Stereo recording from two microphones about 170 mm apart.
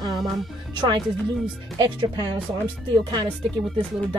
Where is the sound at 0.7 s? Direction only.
25° right (ahead or behind).